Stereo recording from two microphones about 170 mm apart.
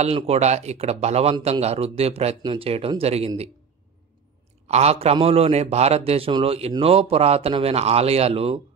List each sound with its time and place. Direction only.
0.0 s a man's voice: 40° right (ahead or behind)
4.6 s a man's voice: 40° right (ahead or behind)